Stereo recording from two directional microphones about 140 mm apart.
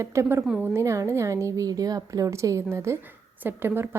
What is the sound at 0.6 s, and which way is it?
A woman's voice, 20° right (ahead or behind).